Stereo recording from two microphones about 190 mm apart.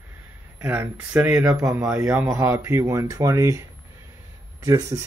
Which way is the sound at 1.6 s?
15° right (ahead or behind).